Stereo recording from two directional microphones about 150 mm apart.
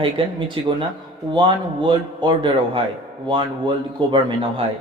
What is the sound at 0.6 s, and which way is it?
Speech, 35° right (ahead or behind).